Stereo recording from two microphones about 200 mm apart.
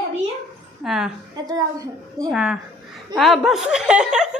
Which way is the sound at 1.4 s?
20° right (ahead or behind).